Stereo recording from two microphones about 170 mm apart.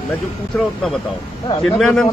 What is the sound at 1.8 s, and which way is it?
Speech, centre (ahead or behind).